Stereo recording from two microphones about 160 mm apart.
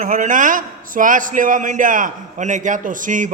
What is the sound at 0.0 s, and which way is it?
A man's voice, 55° right (ahead or behind).